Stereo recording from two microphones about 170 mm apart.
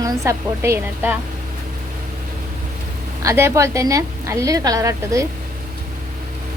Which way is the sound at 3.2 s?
15° right (ahead or behind).